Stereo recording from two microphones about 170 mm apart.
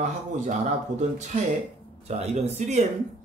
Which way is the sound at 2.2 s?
40° right (ahead or behind).